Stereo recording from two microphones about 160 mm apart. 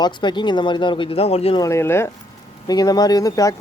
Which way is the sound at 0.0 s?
30° left (ahead or behind).